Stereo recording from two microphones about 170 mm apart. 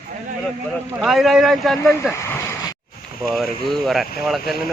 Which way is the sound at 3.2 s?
Centre (ahead or behind).